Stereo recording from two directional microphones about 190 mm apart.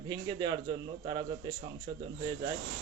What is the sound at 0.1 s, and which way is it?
Speech, 25° right (ahead or behind).